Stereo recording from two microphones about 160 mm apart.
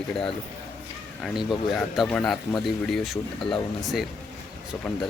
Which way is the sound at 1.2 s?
Centre (ahead or behind).